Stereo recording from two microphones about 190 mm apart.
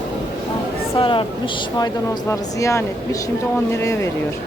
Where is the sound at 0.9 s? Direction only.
25° left (ahead or behind).